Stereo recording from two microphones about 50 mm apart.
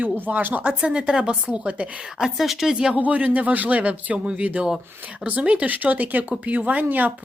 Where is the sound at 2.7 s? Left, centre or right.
Right.